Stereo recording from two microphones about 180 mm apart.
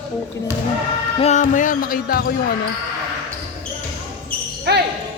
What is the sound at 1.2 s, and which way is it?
Speech, 40° left (ahead or behind).